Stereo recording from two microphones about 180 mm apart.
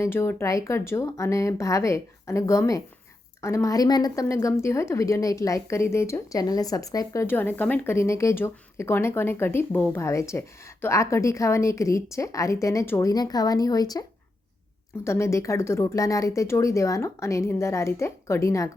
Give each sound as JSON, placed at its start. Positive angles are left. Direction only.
{"t": 0.0, "sound": "a woman's voice", "side_deg": 15}
{"t": 15.0, "sound": "a woman's voice", "side_deg": 15}